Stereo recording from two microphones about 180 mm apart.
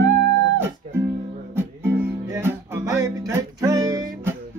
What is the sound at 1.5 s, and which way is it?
Music, 15° right (ahead or behind).